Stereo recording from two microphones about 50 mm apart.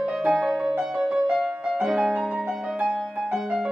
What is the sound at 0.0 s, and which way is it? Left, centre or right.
Music, right.